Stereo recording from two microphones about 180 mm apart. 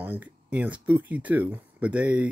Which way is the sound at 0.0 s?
10° right (ahead or behind).